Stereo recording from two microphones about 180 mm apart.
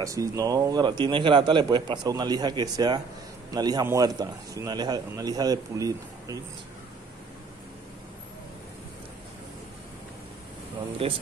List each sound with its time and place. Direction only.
0.0 s a man's voice: 20° right (ahead or behind)
11.0 s speech: 30° right (ahead or behind)